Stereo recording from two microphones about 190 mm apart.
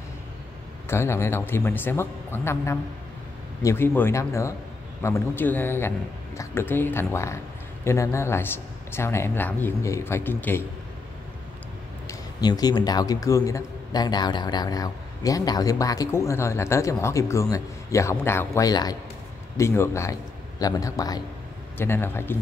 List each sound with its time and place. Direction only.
0.8 s a man's voice: 15° left (ahead or behind)
12.1 s a man's voice: 20° left (ahead or behind)